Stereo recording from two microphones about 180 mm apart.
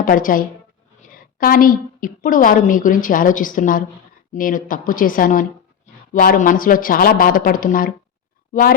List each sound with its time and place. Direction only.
0.0 s a woman's voice: 50° left (ahead or behind)